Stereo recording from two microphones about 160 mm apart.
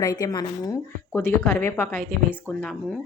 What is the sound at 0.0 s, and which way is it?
Speech, 25° left (ahead or behind).